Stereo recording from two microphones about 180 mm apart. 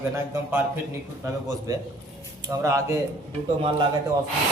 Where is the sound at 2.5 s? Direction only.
15° right (ahead or behind).